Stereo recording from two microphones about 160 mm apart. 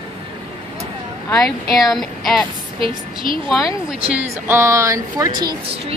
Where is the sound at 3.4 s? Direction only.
5° right (ahead or behind).